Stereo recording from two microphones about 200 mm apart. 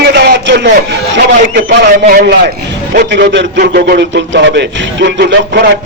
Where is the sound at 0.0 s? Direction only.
55° right (ahead or behind).